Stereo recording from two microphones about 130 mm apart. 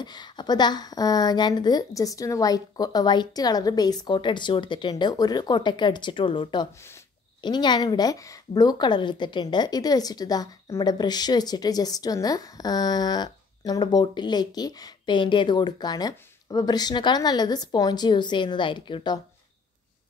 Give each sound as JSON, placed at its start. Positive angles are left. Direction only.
{"t": 0.0, "sound": "a woman's voice", "side_deg": 35}